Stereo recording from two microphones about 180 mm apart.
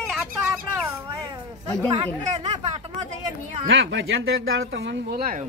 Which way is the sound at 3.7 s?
90° right.